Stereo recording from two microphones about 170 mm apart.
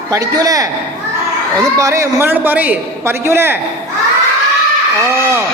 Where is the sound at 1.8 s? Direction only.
20° right (ahead or behind).